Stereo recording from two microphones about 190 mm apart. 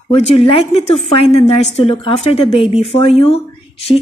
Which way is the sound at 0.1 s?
30° left (ahead or behind).